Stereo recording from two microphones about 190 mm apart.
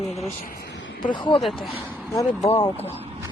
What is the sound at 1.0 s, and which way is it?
Speech, 25° left (ahead or behind).